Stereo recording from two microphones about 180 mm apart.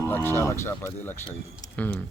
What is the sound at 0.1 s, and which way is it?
Speech, 10° left (ahead or behind).